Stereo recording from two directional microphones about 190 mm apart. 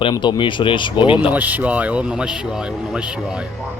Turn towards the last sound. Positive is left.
turn(degrees=-5)  # may be behind; listen again after turning